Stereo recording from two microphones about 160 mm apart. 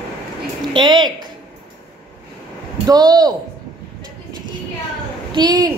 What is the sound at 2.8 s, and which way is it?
Speech, 25° right (ahead or behind).